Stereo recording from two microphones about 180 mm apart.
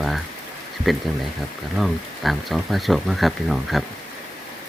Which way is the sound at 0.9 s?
Centre (ahead or behind).